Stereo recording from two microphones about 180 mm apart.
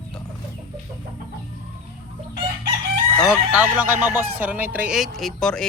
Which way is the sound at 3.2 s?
5° right (ahead or behind).